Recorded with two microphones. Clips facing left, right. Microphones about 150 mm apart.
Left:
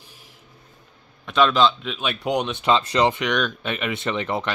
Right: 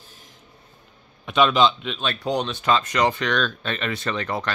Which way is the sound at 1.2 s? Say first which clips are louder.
Even; 5° right (ahead or behind).